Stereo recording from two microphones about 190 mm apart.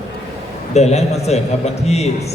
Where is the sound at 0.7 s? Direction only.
35° left (ahead or behind).